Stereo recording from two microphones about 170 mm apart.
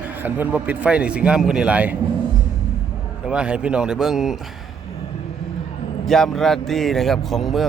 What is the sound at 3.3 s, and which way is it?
Speech, 5° right (ahead or behind).